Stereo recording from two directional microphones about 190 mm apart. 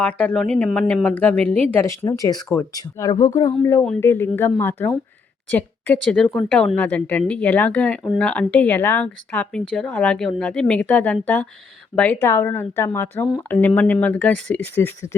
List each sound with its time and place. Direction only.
0.0 s speech: 10° left (ahead or behind)